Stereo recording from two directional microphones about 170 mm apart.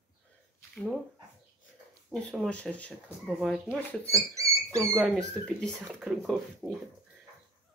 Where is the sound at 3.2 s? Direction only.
5° right (ahead or behind).